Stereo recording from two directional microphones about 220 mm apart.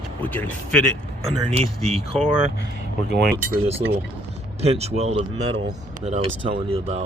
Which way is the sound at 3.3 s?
45° right (ahead or behind).